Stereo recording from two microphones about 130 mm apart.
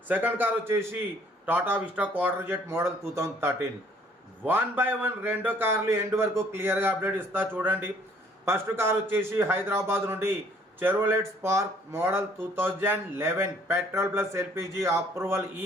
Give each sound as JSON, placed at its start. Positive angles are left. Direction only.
{"t": 0.1, "sound": "a man's voice", "side_deg": -15}